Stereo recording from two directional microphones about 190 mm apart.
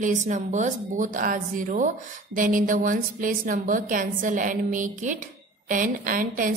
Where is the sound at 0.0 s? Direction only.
40° right (ahead or behind).